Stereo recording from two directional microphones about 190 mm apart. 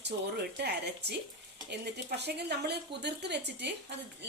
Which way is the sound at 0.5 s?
60° right (ahead or behind).